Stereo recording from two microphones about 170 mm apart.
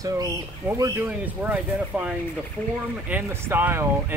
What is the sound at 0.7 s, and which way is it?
Speech, 20° right (ahead or behind).